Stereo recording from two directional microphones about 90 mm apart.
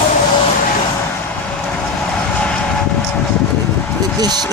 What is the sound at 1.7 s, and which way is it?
Vehicle, 15° left (ahead or behind).